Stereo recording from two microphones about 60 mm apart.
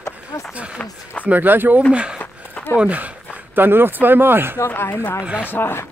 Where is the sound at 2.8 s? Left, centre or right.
Right.